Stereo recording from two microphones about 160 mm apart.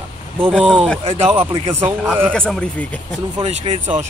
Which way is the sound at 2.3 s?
5° left (ahead or behind).